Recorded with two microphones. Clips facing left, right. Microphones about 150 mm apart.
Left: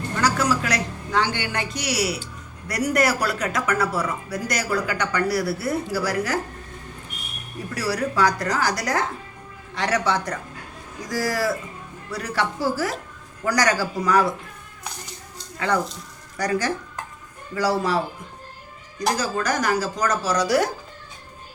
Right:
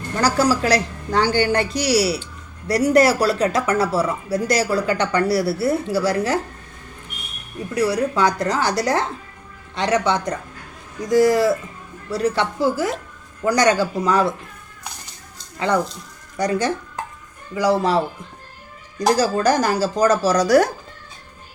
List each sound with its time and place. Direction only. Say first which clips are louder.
0.2 s a woman's voice: right 4 dB; 35° right (ahead or behind)
7.7 s speech: right 6 dB; 20° right (ahead or behind)
15.5 s speech: right 3 dB; 20° right (ahead or behind)
18.9 s a woman's voice: right 6 dB; 35° right (ahead or behind)